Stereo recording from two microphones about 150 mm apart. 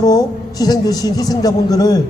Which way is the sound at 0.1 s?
25° left (ahead or behind).